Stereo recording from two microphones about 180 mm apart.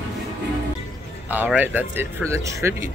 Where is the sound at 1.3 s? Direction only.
10° right (ahead or behind).